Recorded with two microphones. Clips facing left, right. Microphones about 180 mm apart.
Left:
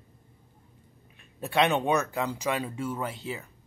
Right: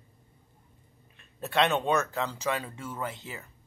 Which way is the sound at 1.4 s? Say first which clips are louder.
Left 1 dB; 15° left (ahead or behind).